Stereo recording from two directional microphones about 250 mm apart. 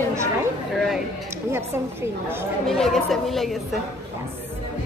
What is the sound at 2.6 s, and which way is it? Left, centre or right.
Speech, centre.